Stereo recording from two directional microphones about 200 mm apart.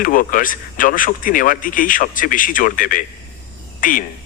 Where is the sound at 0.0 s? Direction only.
45° left (ahead or behind).